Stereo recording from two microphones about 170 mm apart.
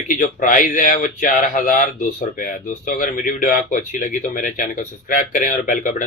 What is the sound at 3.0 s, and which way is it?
Speech, 50° left (ahead or behind).